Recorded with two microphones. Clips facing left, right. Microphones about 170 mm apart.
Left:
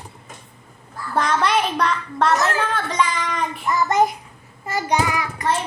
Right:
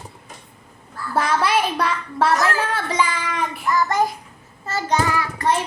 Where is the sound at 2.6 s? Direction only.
5° right (ahead or behind).